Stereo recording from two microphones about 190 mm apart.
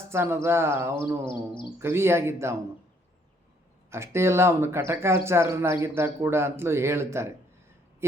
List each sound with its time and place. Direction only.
0.1 s speech: 15° right (ahead or behind)
1.2 s a sound: 25° left (ahead or behind)
1.8 s speech: 15° right (ahead or behind)
3.8 s speech: 15° right (ahead or behind)